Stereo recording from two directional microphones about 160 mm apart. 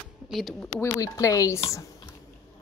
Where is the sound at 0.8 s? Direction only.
20° left (ahead or behind).